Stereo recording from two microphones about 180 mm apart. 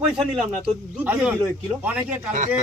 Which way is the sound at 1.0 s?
10° right (ahead or behind).